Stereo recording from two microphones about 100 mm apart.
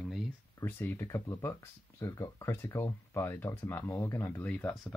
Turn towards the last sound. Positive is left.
turn(degrees=10)  # may be behind; listen again after turning